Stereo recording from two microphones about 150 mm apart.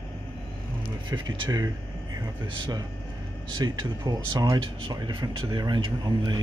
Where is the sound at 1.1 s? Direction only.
30° right (ahead or behind).